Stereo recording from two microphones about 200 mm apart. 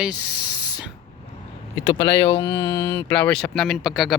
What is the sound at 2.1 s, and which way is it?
Speech, 60° left (ahead or behind).